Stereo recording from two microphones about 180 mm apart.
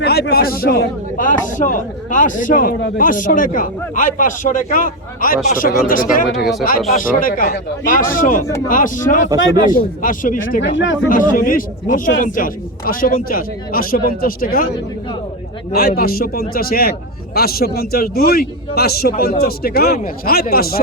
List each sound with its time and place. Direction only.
0.0 s a man's voice: 60° left (ahead or behind)
6.3 s speech: centre (ahead or behind)
7.1 s a man's voice: 50° left (ahead or behind)
10.6 s speech: 90° left
11.1 s a man's voice: 50° left (ahead or behind)
15.7 s a man's voice: 60° left (ahead or behind)